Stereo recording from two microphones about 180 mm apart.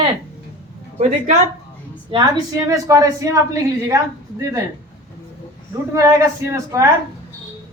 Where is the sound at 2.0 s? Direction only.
25° right (ahead or behind).